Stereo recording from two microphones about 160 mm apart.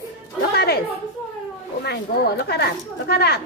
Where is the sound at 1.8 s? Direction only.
90° left.